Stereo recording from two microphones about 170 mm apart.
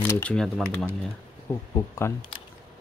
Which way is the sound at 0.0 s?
10° left (ahead or behind).